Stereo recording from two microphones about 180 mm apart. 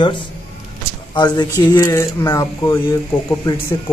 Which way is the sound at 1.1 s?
25° left (ahead or behind).